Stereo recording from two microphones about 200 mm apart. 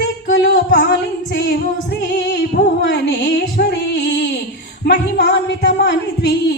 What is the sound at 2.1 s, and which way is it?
Music, 55° left (ahead or behind).